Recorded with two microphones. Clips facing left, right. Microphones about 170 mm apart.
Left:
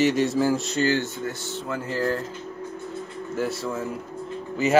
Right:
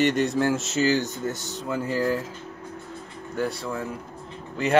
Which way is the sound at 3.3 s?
Centre (ahead or behind).